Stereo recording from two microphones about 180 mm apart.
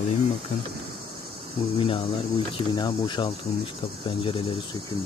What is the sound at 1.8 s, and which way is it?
Speech, 30° left (ahead or behind).